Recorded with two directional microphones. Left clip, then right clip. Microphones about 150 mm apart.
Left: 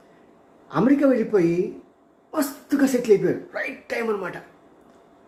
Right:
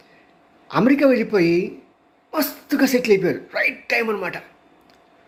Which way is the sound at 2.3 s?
15° right (ahead or behind).